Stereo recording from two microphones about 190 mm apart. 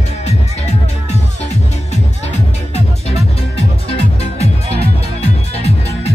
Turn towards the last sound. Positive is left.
turn(degrees=35)  # may be behind; listen again after turning